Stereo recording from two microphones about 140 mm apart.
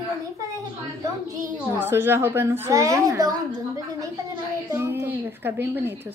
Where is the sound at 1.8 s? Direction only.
15° right (ahead or behind).